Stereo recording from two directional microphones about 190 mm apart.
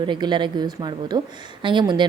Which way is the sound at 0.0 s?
25° right (ahead or behind).